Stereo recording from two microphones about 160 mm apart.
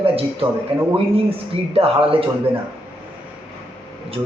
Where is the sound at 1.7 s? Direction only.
35° right (ahead or behind).